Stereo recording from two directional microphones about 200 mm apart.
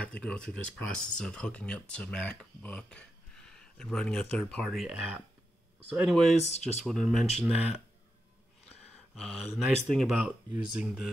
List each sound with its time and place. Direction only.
0.0 s speech: 5° left (ahead or behind)
6.4 s speech: 35° left (ahead or behind)
6.9 s speech: centre (ahead or behind)
9.1 s speech: centre (ahead or behind)